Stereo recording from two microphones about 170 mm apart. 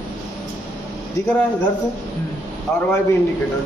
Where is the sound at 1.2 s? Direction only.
20° left (ahead or behind).